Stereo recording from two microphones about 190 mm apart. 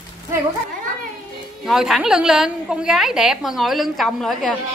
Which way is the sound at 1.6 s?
Centre (ahead or behind).